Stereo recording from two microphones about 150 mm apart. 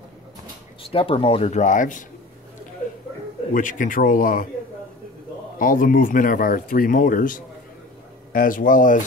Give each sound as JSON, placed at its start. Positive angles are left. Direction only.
{"t": 0.9, "sound": "speech", "side_deg": 40}
{"t": 3.5, "sound": "speech", "side_deg": 60}
{"t": 5.6, "sound": "speech", "side_deg": 65}